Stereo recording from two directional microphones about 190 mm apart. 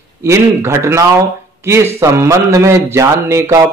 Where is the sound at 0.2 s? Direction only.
15° right (ahead or behind).